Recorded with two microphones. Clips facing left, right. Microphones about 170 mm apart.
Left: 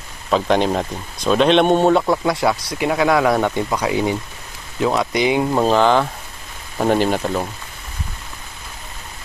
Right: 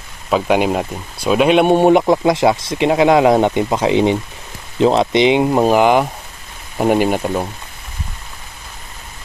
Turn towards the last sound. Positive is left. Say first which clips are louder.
# right 2 dB
turn(degrees=-10)  # may be behind; listen again after turning